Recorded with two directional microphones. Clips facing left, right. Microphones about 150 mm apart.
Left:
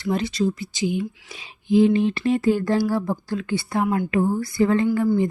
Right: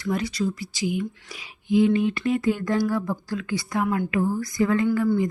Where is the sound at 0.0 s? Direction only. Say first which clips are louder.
Left 3 dB; 25° left (ahead or behind).